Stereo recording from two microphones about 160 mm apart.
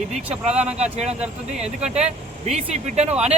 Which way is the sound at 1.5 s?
5° right (ahead or behind).